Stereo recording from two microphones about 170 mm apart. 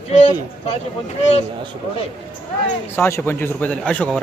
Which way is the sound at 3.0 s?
15° left (ahead or behind).